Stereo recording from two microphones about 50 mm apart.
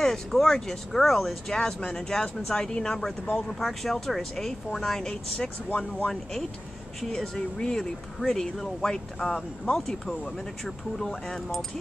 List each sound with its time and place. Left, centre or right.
0.0 s speech: centre
3.5 s speech: centre
7.2 s speech: centre
11.3 s speech: centre